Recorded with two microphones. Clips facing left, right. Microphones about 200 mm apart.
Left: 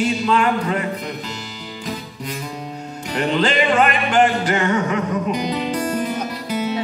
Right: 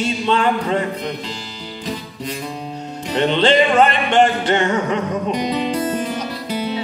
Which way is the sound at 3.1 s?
25° right (ahead or behind).